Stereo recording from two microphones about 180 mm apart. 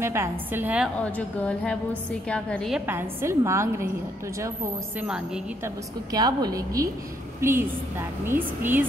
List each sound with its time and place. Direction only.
0.0 s a woman's voice: 15° right (ahead or behind)
0.9 s a woman's voice: 5° left (ahead or behind)
2.9 s a woman's voice: 10° right (ahead or behind)
6.1 s a woman's voice: 20° right (ahead or behind)